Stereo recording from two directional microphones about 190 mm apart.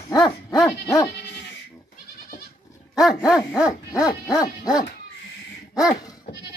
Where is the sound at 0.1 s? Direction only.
20° left (ahead or behind).